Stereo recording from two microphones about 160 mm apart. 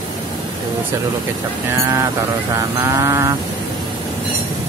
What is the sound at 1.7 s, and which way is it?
Mantra, 20° right (ahead or behind).